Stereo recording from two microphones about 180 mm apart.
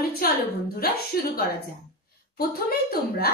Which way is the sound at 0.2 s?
55° left (ahead or behind).